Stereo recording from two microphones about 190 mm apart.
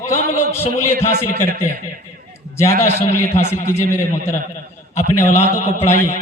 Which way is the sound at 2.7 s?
15° left (ahead or behind).